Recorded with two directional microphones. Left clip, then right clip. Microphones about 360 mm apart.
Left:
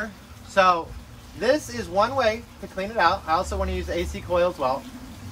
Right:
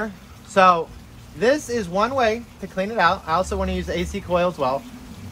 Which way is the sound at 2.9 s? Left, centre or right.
Right.